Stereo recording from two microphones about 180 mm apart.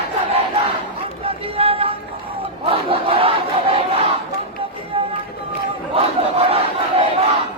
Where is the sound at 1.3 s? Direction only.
30° right (ahead or behind).